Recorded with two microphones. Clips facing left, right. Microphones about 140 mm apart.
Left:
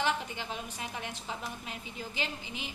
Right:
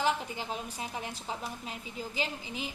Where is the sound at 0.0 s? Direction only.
35° right (ahead or behind).